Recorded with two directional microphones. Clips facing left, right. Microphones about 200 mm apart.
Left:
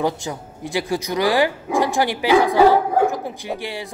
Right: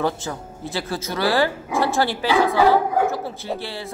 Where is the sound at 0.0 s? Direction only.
15° left (ahead or behind).